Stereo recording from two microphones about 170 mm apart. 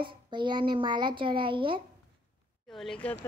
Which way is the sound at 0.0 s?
25° right (ahead or behind).